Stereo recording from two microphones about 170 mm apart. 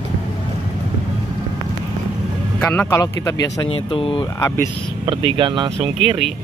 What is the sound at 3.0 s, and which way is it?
Speech, 20° left (ahead or behind).